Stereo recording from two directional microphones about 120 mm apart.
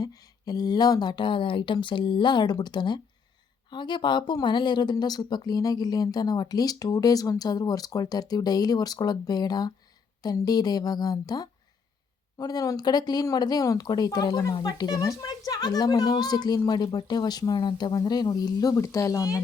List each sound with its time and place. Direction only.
0.0 s speech: 30° left (ahead or behind)